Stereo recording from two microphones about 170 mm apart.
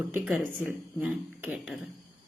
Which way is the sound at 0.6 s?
10° right (ahead or behind).